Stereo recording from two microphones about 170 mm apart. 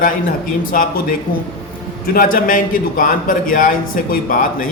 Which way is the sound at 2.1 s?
55° left (ahead or behind).